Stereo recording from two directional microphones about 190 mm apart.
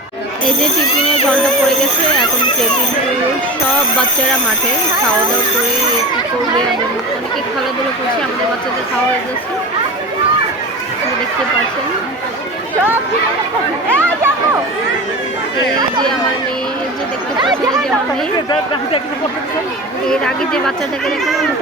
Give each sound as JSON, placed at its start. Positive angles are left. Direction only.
{"t": 13.9, "sound": "chatter", "side_deg": -10}
{"t": 20.1, "sound": "speech", "side_deg": 5}